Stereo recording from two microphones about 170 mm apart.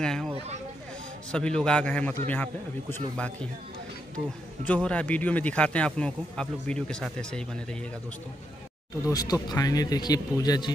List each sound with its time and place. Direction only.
0.0 s a man's voice: 5° left (ahead or behind)
1.3 s a man's voice: 5° left (ahead or behind)
4.6 s speech: 5° left (ahead or behind)
9.0 s speech: 20° left (ahead or behind)